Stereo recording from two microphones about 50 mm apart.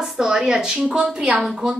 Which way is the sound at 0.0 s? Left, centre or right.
Centre.